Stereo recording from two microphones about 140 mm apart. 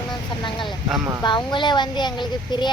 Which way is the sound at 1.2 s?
35° left (ahead or behind).